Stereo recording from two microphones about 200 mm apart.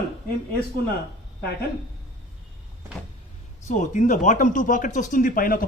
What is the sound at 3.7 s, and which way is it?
Speech, 40° left (ahead or behind).